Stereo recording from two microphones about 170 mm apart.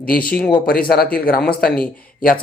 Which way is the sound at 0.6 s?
60° left (ahead or behind).